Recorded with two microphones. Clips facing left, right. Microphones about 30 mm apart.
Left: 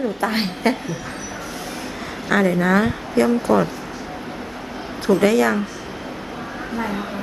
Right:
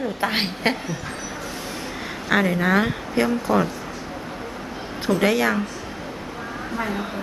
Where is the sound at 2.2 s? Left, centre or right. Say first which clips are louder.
Left 2 dB; centre.